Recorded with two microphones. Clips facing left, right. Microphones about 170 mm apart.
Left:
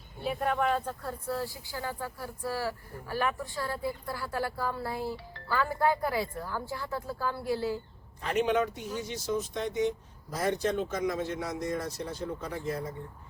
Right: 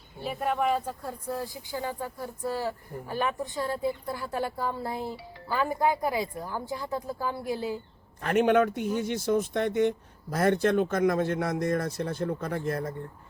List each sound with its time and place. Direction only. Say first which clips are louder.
0.2 s speech: right 1 dB; centre (ahead or behind)
8.2 s speech: right 5 dB; 55° right (ahead or behind)